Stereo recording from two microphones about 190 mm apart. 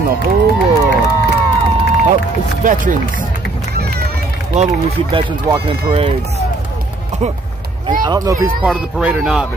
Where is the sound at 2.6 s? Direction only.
45° right (ahead or behind).